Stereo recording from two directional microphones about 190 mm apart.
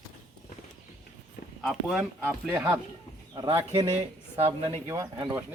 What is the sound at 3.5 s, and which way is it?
Speech, 20° right (ahead or behind).